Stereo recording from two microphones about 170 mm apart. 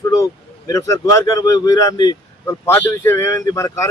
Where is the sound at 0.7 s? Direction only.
20° left (ahead or behind).